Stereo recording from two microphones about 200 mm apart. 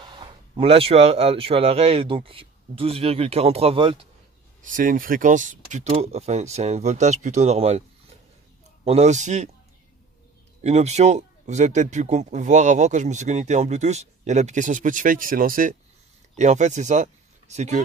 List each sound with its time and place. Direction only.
0.0 s speech: 25° right (ahead or behind)
4.6 s speech: 40° right (ahead or behind)
8.8 s speech: 35° right (ahead or behind)
10.6 s speech: 35° right (ahead or behind)